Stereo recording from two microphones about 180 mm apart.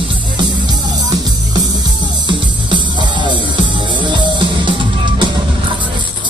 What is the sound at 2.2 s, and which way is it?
Music, 25° right (ahead or behind).